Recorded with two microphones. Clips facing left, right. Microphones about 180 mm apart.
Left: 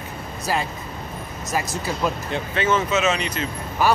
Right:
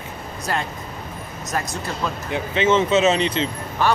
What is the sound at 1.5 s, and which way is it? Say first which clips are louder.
Speech: left 1 dB; 5° left (ahead or behind).